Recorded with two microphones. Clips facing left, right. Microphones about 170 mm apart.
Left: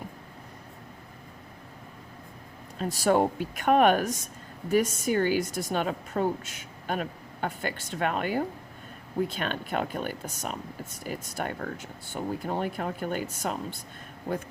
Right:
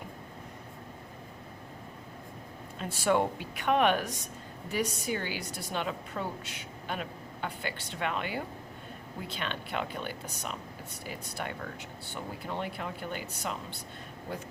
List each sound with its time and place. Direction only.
2.7 s a woman's voice: 40° left (ahead or behind)